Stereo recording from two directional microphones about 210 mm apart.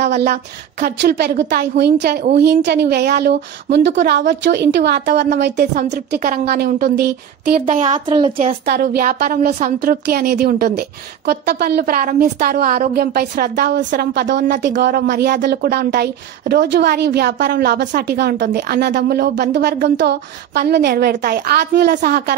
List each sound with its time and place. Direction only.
0.1 s a woman's voice: 45° right (ahead or behind)